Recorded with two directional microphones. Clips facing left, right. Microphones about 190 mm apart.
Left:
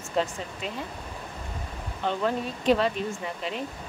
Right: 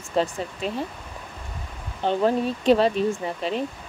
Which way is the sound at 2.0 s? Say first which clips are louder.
Right 6 dB; 30° right (ahead or behind).